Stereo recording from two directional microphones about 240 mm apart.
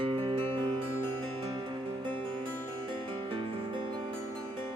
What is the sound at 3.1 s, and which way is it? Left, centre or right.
Music, right.